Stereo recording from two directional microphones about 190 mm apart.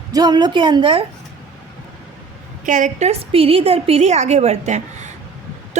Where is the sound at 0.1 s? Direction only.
20° right (ahead or behind).